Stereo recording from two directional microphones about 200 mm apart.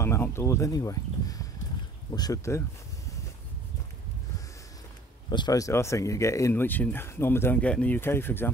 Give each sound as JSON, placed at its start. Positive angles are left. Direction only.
{"t": 0.0, "sound": "speech", "side_deg": 15}
{"t": 5.3, "sound": "speech", "side_deg": 20}